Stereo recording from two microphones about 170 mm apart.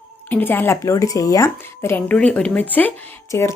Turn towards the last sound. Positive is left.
turn(degrees=15)  # may be behind; listen again after turning